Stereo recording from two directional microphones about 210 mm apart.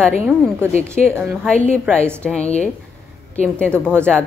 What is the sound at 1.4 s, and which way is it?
A woman's voice, 5° left (ahead or behind).